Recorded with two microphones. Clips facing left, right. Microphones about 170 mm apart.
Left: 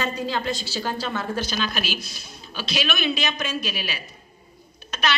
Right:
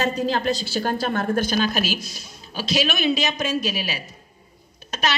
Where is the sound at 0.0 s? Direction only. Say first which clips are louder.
Right 4 dB; 40° right (ahead or behind).